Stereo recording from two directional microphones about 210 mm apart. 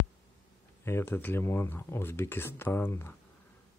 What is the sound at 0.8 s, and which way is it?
Speech, 10° left (ahead or behind).